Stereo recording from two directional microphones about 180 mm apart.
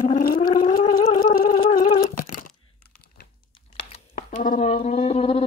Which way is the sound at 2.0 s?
50° left (ahead or behind).